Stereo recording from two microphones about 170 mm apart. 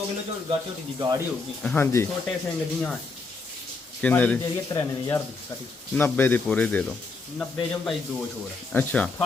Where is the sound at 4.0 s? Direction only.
10° left (ahead or behind).